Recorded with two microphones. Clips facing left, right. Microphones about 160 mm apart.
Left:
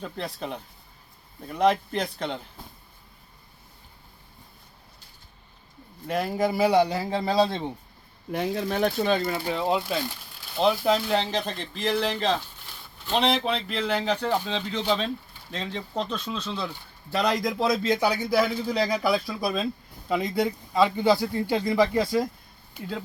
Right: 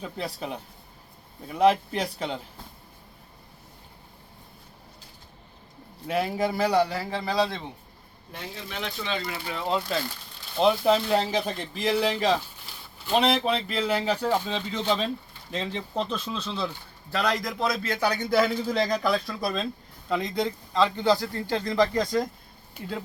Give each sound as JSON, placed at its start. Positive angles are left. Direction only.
{"t": 0.0, "sound": "speech", "side_deg": -5}
{"t": 6.1, "sound": "a man's voice", "side_deg": 0}
{"t": 8.5, "sound": "speech", "side_deg": 50}
{"t": 9.5, "sound": "a man's voice", "side_deg": 20}
{"t": 9.8, "sound": "a sound", "side_deg": 10}
{"t": 10.6, "sound": "speech", "side_deg": 0}
{"t": 17.1, "sound": "speech", "side_deg": 15}